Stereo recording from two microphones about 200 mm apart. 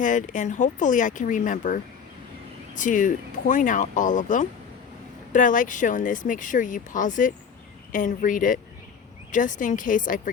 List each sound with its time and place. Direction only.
0.0 s speech: 40° left (ahead or behind)